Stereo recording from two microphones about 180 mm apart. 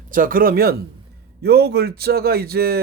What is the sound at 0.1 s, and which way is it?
A man's voice, 50° right (ahead or behind).